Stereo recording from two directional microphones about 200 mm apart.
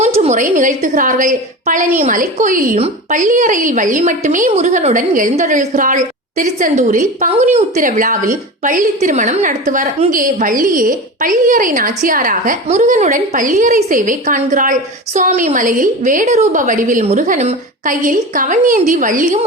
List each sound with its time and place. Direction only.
0.2 s a woman's voice: 35° right (ahead or behind)